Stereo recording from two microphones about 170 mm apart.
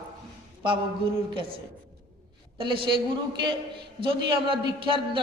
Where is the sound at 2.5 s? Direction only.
30° right (ahead or behind).